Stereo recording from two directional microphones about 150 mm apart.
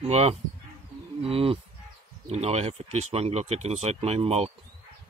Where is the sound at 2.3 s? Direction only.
45° right (ahead or behind).